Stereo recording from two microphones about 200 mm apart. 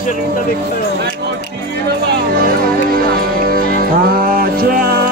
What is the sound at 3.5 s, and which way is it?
Music, 50° right (ahead or behind).